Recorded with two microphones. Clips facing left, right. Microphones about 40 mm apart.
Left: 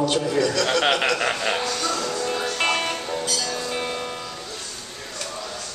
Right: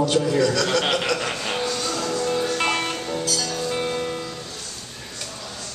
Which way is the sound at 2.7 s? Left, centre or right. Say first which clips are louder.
Even; centre.